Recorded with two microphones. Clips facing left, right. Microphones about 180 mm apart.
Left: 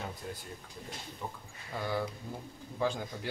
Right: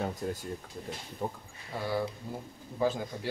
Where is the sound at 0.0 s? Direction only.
45° right (ahead or behind).